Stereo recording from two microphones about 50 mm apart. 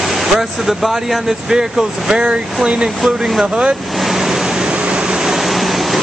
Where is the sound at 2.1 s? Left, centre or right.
Centre.